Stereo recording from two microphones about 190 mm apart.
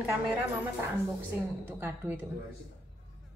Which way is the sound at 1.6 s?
10° right (ahead or behind).